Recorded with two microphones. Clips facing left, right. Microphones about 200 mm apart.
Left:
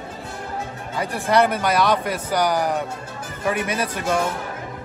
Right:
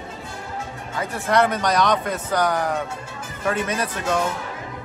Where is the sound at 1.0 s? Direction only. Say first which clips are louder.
Left 1 dB; 10° left (ahead or behind).